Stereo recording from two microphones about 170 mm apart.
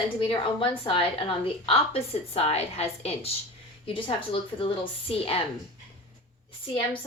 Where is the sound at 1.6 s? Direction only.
35° left (ahead or behind).